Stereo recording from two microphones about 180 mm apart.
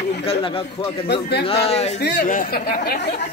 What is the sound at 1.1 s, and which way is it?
Speech, 65° left (ahead or behind).